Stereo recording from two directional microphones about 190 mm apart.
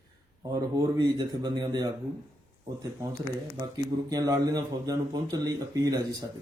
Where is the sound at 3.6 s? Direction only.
20° right (ahead or behind).